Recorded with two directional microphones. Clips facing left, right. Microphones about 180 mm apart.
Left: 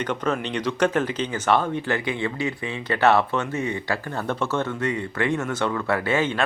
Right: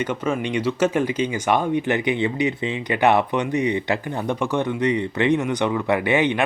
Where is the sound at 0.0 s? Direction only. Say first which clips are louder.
Right 2 dB; 10° right (ahead or behind).